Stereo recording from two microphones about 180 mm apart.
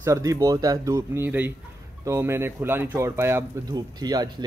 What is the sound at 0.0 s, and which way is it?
Speech, 15° right (ahead or behind).